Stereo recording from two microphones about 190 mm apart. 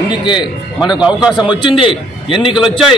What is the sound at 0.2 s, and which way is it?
Speech, 25° left (ahead or behind).